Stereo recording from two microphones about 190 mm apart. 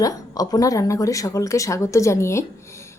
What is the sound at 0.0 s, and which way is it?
A woman's voice, 20° left (ahead or behind).